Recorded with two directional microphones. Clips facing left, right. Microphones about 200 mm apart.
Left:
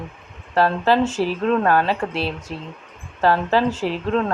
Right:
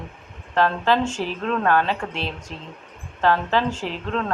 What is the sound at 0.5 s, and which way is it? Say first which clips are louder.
A woman's voice: left 2 dB; 10° left (ahead or behind).